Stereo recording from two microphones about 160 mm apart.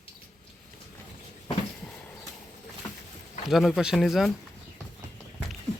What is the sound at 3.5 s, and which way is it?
Speech, centre (ahead or behind).